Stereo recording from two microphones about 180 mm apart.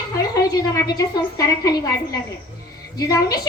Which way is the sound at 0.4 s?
20° left (ahead or behind).